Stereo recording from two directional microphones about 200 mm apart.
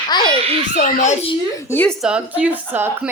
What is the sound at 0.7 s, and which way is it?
Speech, 35° left (ahead or behind).